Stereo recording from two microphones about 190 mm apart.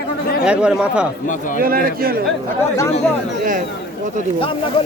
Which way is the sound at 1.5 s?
50° right (ahead or behind).